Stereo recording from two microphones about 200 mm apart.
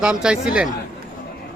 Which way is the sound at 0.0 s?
5° right (ahead or behind).